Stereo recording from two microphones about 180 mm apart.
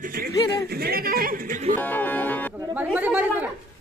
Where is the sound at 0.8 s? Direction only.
55° right (ahead or behind).